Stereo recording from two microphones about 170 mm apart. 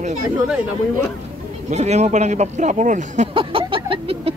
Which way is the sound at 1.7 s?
40° right (ahead or behind).